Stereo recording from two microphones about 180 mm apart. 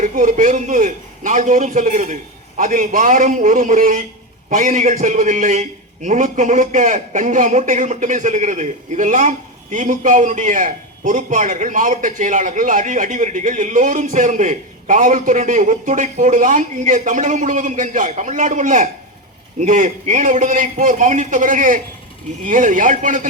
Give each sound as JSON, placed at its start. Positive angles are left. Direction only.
{"t": 0.0, "sound": "a man's voice", "side_deg": -45}